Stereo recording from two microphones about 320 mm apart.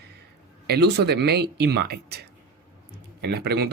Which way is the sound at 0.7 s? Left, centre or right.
Right.